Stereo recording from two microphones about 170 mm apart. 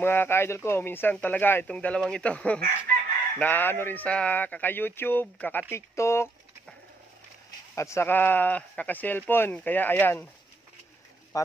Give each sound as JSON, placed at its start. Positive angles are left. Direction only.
{"t": 0.0, "sound": "speech", "side_deg": 10}
{"t": 7.7, "sound": "speech", "side_deg": 15}
{"t": 11.3, "sound": "speech", "side_deg": 20}